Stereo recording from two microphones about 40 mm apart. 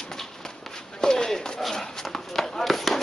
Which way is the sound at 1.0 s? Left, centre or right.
Centre.